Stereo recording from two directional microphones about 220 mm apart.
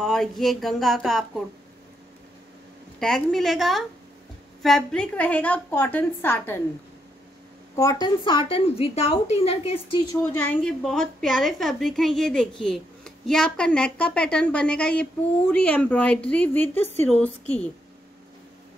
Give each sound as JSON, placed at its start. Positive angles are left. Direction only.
{"t": 0.0, "sound": "a woman's voice", "side_deg": 0}
{"t": 3.0, "sound": "a woman's voice", "side_deg": 0}
{"t": 7.7, "sound": "a woman's voice", "side_deg": 15}
{"t": 10.3, "sound": "a woman's voice", "side_deg": 10}